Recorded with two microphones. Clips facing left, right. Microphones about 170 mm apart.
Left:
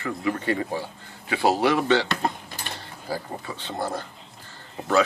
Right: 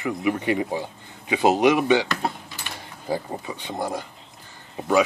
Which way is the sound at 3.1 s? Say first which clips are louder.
Right 4 dB; 15° right (ahead or behind).